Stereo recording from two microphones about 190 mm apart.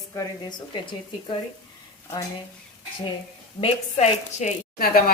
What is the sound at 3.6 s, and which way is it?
Speech, 35° left (ahead or behind).